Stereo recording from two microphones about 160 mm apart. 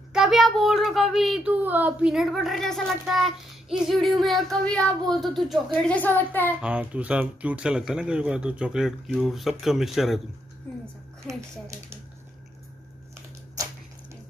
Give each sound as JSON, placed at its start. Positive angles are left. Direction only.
{"t": 0.1, "sound": "a child's voice", "side_deg": 0}
{"t": 6.6, "sound": "a woman's voice", "side_deg": -10}
{"t": 11.2, "sound": "speech", "side_deg": -20}